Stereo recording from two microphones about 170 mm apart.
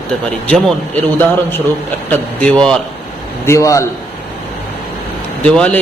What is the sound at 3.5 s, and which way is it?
Speech, 20° left (ahead or behind).